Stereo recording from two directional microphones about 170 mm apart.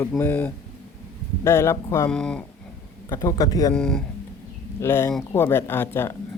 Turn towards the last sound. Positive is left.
turn(degrees=15)  # may be behind; listen again after turning